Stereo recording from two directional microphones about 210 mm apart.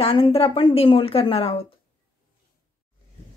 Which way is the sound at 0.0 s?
25° left (ahead or behind).